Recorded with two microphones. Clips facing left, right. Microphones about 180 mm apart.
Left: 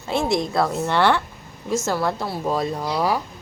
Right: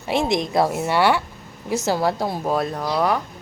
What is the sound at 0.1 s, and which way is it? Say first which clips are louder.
A woman's voice: right 1 dB; 20° right (ahead or behind).